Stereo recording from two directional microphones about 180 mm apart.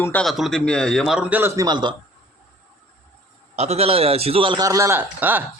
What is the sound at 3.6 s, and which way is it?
A man's voice, 35° right (ahead or behind).